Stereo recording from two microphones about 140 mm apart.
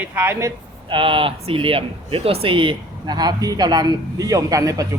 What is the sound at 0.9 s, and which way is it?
Speech, 40° right (ahead or behind).